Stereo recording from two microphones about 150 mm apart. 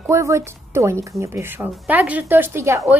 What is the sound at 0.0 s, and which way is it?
Speech, 20° right (ahead or behind).